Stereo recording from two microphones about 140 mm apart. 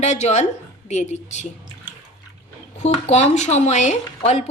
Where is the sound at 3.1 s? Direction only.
50° left (ahead or behind).